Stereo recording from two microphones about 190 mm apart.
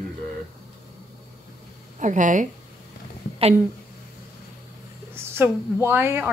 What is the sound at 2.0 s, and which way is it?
Speech, 40° right (ahead or behind).